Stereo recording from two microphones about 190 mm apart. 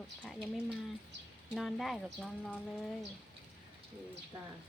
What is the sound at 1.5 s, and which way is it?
Speech, centre (ahead or behind).